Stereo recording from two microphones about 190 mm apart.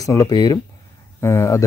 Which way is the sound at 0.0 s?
15° left (ahead or behind).